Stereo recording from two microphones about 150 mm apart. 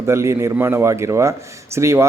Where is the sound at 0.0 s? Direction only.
20° right (ahead or behind).